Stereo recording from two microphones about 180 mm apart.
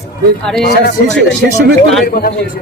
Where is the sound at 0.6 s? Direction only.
65° left (ahead or behind).